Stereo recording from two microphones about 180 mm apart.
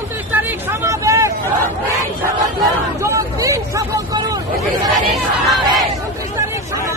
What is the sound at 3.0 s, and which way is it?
Hubbub, 20° right (ahead or behind).